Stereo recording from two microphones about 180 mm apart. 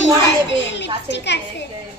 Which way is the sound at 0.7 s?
75° left (ahead or behind).